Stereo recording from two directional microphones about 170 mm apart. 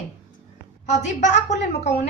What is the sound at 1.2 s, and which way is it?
Speech, 45° left (ahead or behind).